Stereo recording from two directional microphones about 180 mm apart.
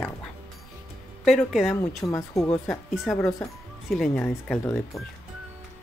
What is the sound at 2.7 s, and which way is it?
Speech, centre (ahead or behind).